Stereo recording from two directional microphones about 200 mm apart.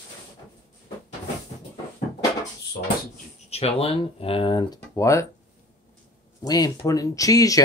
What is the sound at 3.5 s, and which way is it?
Speech, 30° left (ahead or behind).